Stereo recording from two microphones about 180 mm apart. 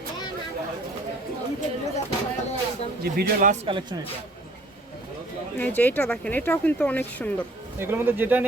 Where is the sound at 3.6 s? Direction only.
25° right (ahead or behind).